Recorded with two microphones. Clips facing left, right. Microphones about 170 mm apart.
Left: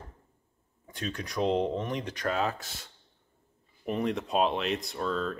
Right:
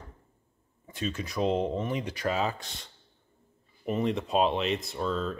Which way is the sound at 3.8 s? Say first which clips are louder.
Right 1 dB; centre (ahead or behind).